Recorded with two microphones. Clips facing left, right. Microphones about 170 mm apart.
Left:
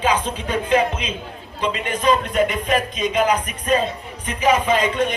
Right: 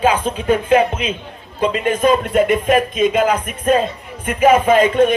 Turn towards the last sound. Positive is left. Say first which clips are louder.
# right 7 dB
turn(degrees=-55)  # may be behind; listen again after turning